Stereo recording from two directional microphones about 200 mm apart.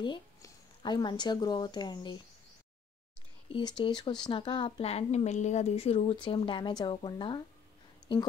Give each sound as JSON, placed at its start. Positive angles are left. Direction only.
{"t": 0.0, "sound": "speech", "side_deg": 25}
{"t": 3.5, "sound": "a woman's voice", "side_deg": 25}